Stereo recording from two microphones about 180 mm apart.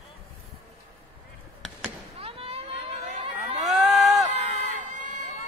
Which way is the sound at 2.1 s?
30° right (ahead or behind).